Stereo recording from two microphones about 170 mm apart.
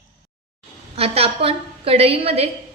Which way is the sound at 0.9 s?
35° right (ahead or behind).